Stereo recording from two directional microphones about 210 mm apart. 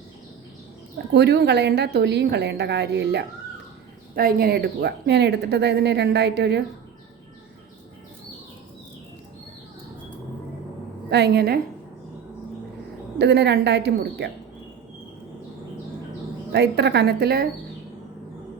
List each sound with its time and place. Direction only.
1.1 s speech: 55° right (ahead or behind)
11.1 s speech: 50° right (ahead or behind)
13.1 s speech: 55° right (ahead or behind)
16.5 s speech: 55° right (ahead or behind)